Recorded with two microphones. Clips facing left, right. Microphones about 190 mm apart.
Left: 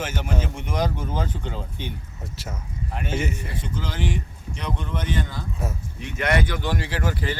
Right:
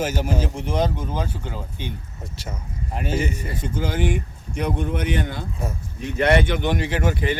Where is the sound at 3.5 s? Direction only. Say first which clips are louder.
Right 5 dB; 45° right (ahead or behind); by 5.4 s 65° right (ahead or behind).